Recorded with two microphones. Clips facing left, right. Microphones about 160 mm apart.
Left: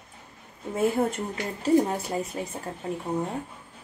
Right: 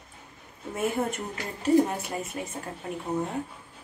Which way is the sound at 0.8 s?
30° left (ahead or behind).